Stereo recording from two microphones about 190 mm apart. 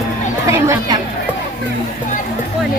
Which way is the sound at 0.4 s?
15° right (ahead or behind).